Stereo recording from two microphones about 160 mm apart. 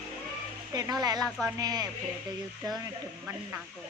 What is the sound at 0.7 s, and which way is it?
Speech, 25° right (ahead or behind).